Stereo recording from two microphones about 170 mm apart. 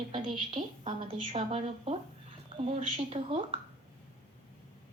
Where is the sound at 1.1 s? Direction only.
35° right (ahead or behind).